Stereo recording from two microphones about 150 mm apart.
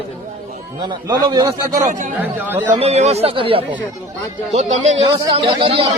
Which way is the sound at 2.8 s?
45° right (ahead or behind).